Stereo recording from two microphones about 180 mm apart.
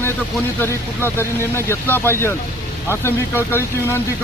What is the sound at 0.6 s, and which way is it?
Speech, 15° left (ahead or behind).